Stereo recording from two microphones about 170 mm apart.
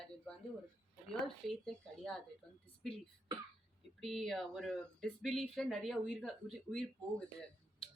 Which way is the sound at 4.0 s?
Centre (ahead or behind).